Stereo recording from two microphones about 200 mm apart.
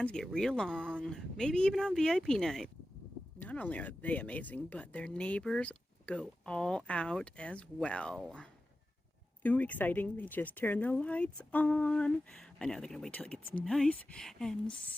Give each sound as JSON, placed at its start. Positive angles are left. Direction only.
{"t": 0.0, "sound": "speech", "side_deg": 5}